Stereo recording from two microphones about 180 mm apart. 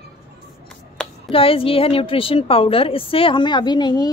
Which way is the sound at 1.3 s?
30° left (ahead or behind).